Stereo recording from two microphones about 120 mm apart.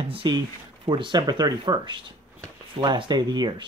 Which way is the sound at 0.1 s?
45° right (ahead or behind).